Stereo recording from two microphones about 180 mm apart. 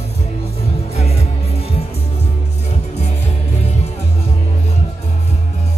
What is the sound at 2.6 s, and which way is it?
Music, 35° left (ahead or behind).